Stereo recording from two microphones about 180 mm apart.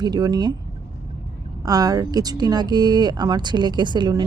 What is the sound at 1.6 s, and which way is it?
Speech, 20° right (ahead or behind).